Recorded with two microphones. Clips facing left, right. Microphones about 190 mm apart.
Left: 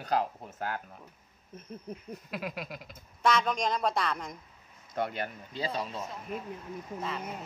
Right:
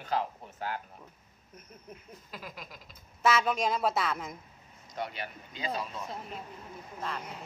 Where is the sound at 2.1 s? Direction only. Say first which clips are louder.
Left 9 dB; 70° left (ahead or behind).